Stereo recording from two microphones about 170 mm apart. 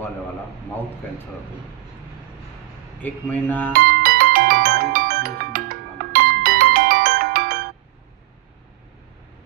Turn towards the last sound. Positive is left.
turn(degrees=-60)  # may be behind; listen again after turning